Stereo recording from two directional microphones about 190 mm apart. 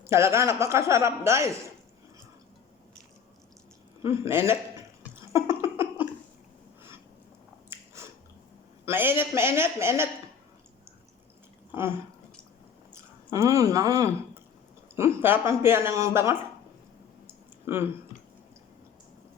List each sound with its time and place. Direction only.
0.0 s speech: 15° right (ahead or behind)
4.0 s speech: 15° right (ahead or behind)
5.3 s a sound: 15° right (ahead or behind)
7.7 s biting: 10° right (ahead or behind)
8.8 s speech: 10° right (ahead or behind)
11.7 s speech: 10° right (ahead or behind)
17.7 s speech: 15° right (ahead or behind)